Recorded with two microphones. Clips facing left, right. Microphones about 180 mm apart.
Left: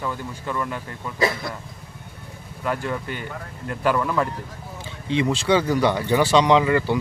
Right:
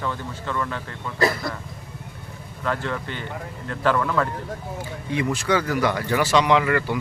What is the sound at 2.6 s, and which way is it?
Speech, 10° left (ahead or behind).